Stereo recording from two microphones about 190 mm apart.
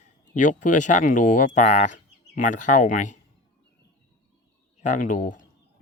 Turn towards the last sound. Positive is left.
turn(degrees=45)  # may be behind; listen again after turning